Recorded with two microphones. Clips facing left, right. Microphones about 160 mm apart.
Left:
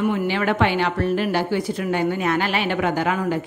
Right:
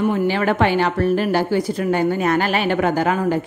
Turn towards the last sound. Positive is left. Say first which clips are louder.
# right 3 dB
turn(degrees=-40)  # may be behind; listen again after turning